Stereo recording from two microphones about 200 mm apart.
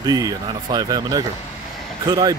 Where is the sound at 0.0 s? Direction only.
20° right (ahead or behind).